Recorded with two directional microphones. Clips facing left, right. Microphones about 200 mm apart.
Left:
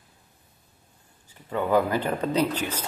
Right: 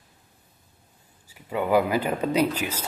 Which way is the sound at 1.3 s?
10° right (ahead or behind).